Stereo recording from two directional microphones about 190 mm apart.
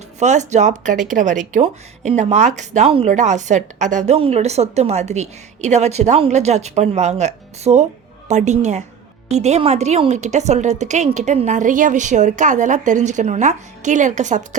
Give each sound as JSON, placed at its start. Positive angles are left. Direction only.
{"t": 0.2, "sound": "speech", "side_deg": -40}